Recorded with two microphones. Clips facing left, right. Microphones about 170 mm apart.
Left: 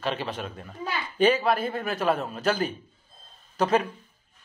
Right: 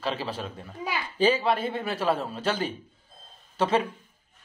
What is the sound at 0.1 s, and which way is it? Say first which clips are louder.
A man's voice: left 1 dB; 30° right (ahead or behind).